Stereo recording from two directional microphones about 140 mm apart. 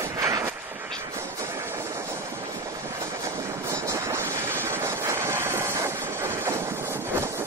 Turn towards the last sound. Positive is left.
turn(degrees=-20)  # may be behind; listen again after turning